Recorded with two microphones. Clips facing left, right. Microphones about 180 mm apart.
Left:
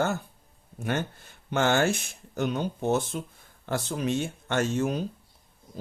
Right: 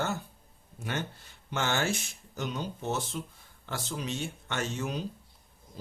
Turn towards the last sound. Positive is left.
turn(degrees=50)  # may be behind; listen again after turning